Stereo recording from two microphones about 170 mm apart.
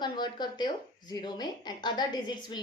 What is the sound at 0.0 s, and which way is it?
A woman's voice, 25° left (ahead or behind).